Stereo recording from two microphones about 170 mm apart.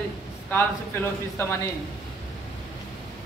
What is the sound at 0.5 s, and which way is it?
Speech, 15° left (ahead or behind).